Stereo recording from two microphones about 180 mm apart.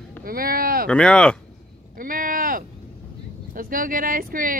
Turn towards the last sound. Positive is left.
turn(degrees=-50)  # may be behind; listen again after turning